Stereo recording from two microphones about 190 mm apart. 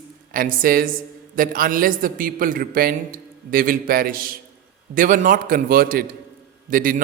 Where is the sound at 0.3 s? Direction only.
50° right (ahead or behind).